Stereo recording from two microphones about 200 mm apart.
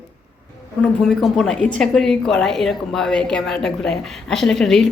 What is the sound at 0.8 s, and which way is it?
A woman's voice, centre (ahead or behind).